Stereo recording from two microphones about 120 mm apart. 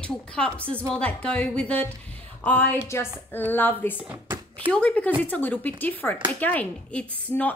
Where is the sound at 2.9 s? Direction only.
20° left (ahead or behind).